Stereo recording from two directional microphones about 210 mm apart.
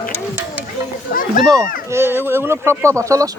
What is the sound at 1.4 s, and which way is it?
Speech, 20° right (ahead or behind).